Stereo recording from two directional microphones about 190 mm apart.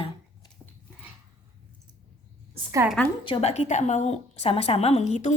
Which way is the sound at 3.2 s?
30° left (ahead or behind).